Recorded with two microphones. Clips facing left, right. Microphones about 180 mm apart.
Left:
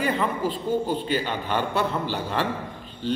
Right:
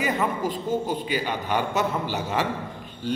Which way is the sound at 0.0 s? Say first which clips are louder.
Left 1 dB; 10° right (ahead or behind).